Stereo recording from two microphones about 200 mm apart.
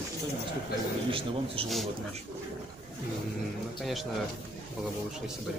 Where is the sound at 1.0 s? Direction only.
25° right (ahead or behind).